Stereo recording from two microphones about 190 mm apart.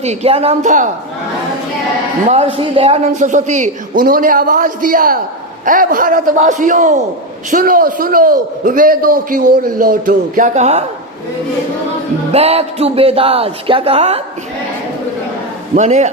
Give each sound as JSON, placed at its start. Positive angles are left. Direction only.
{"t": 0.0, "sound": "a man's voice", "side_deg": -35}
{"t": 2.2, "sound": "a man's voice", "side_deg": -35}
{"t": 12.3, "sound": "a man's voice", "side_deg": -30}
{"t": 15.7, "sound": "a man's voice", "side_deg": -35}